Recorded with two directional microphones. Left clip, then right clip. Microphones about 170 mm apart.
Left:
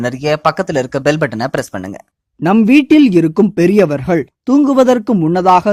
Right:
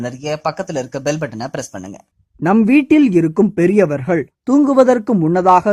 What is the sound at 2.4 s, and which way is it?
Speech, 35° left (ahead or behind).